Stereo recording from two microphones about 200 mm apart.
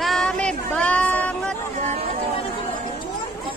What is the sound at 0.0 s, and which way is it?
Child singing, centre (ahead or behind).